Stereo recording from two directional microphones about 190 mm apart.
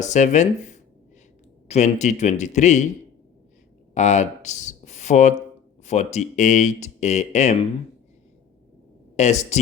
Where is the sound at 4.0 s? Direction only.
35° left (ahead or behind).